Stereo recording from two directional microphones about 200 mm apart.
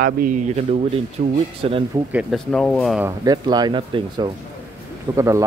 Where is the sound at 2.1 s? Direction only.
Centre (ahead or behind).